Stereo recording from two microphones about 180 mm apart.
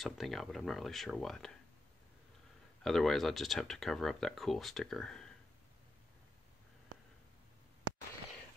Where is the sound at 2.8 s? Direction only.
Centre (ahead or behind).